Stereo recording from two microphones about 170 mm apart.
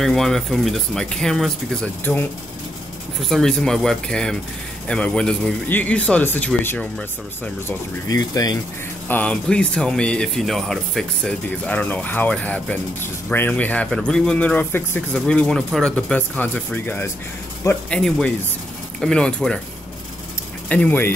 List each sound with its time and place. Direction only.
0.0 s speech: centre (ahead or behind); by 8.5 s 20° left (ahead or behind)
9.1 s speech: 5° left (ahead or behind)
20.6 s speech: 10° left (ahead or behind)